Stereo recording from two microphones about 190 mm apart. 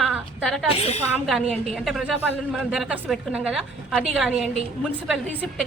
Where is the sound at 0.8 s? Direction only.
35° left (ahead or behind).